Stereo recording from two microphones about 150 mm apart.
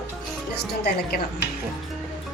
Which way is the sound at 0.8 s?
90° left.